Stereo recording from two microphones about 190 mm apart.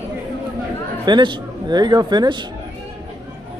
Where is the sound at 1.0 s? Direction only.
25° right (ahead or behind).